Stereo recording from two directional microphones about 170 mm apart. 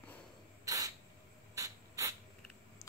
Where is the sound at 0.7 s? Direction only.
20° right (ahead or behind).